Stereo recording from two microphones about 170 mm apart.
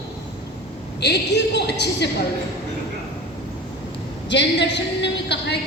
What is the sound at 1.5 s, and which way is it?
Speech, 80° left.